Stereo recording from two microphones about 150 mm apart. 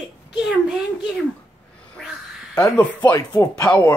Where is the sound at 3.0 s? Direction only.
25° left (ahead or behind).